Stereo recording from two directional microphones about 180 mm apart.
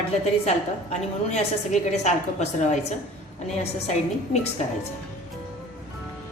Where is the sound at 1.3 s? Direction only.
40° left (ahead or behind).